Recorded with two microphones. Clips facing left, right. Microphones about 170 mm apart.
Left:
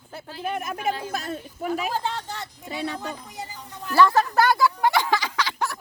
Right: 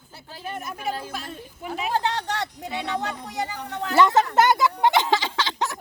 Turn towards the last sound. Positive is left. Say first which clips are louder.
# even
turn(degrees=-20)  # may be behind; listen again after turning